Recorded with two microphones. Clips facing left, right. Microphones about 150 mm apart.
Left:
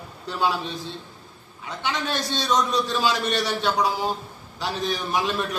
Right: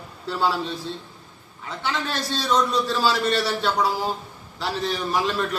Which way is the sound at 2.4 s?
20° left (ahead or behind).